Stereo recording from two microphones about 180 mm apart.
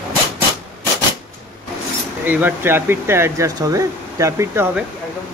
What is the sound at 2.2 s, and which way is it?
Speech, 10° right (ahead or behind).